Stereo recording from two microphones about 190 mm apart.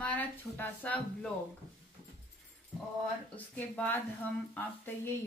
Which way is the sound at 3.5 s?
10° left (ahead or behind).